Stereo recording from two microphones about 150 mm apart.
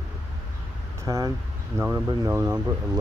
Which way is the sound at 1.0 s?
20° right (ahead or behind).